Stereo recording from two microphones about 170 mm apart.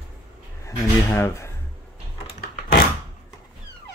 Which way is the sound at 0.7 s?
15° left (ahead or behind).